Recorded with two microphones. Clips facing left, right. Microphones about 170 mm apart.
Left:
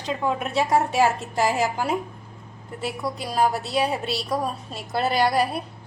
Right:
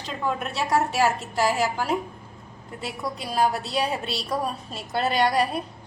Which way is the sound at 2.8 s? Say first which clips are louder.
Left 3 dB; centre (ahead or behind).